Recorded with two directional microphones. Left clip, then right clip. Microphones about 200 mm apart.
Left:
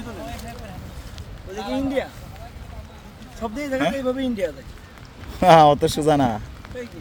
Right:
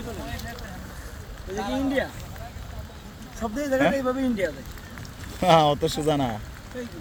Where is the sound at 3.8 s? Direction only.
35° left (ahead or behind).